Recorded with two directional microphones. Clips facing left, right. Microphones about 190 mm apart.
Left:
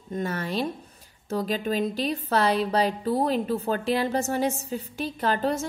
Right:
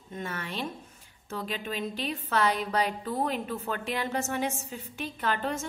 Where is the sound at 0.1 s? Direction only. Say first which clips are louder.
Left 8 dB; 40° left (ahead or behind).